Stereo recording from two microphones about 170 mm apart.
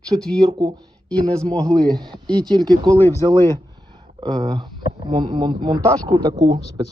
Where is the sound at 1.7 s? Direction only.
20° right (ahead or behind).